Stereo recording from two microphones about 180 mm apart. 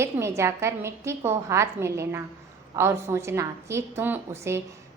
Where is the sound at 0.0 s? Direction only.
15° right (ahead or behind).